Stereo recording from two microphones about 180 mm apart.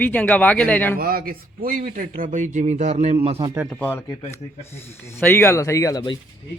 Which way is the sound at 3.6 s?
5° left (ahead or behind).